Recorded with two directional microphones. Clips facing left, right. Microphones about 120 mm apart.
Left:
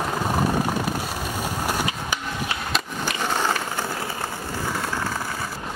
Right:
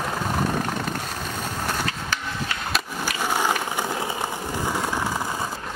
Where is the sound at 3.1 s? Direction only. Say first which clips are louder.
Right 1 dB; 10° right (ahead or behind).